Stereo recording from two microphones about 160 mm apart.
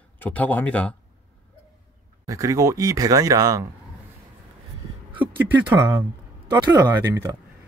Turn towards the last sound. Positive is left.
turn(degrees=-20)  # may be behind; listen again after turning